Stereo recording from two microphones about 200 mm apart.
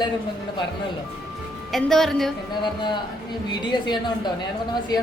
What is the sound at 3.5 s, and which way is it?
Speech, 20° left (ahead or behind).